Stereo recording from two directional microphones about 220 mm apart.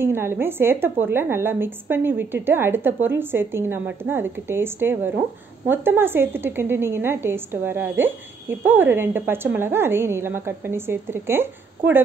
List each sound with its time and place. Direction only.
0.0 s a woman's voice: 10° right (ahead or behind)